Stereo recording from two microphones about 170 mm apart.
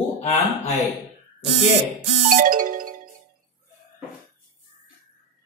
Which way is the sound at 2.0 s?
50° right (ahead or behind).